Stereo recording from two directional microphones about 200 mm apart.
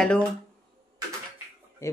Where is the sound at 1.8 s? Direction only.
15° left (ahead or behind).